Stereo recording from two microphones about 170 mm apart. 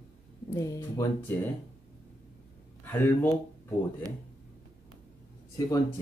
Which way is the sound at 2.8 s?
10° left (ahead or behind).